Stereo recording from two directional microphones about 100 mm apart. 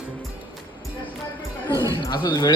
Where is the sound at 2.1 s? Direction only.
45° left (ahead or behind).